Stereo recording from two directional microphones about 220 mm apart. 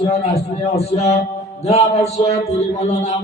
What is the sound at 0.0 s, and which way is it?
A man's voice, 30° left (ahead or behind).